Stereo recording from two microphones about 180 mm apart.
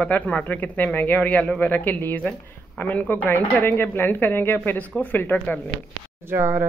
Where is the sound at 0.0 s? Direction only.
10° left (ahead or behind).